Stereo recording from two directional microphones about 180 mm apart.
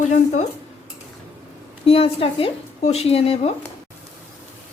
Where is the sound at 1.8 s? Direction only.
30° left (ahead or behind).